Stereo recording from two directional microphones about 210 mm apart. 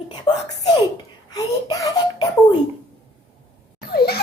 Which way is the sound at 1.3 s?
20° left (ahead or behind).